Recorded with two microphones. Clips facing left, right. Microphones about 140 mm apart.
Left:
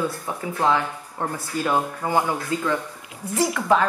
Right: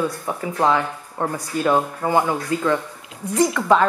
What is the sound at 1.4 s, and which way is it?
Speech, 25° right (ahead or behind).